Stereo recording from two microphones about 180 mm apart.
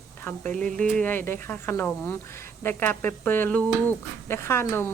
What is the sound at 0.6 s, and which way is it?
Speech, 5° left (ahead or behind).